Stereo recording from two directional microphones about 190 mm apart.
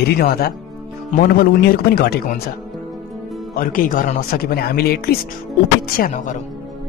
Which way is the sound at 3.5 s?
45° left (ahead or behind).